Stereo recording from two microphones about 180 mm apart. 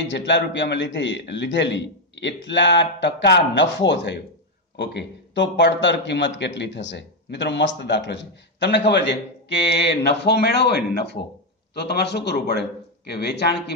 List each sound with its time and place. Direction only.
0.0 s speech: 80° left